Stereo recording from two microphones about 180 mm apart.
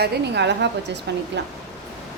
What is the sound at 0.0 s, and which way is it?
A woman's voice, 70° right (ahead or behind).